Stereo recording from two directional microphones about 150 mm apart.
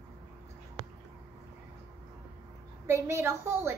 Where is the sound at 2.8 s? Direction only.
20° right (ahead or behind).